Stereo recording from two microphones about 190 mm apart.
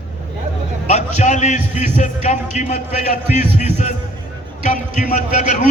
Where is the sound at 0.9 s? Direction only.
35° left (ahead or behind).